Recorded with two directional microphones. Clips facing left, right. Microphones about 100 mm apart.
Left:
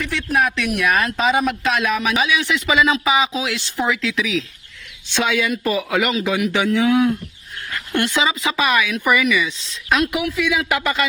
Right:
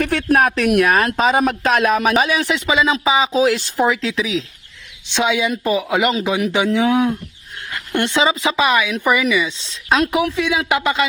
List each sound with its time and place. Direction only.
0.0 s speech: 50° right (ahead or behind); by 4.4 s 30° right (ahead or behind)
5.0 s speech: 20° right (ahead or behind)